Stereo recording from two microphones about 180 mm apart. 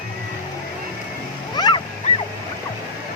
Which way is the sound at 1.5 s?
25° left (ahead or behind).